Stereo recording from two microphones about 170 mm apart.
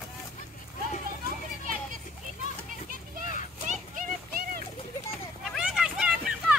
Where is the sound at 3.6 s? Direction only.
50° right (ahead or behind).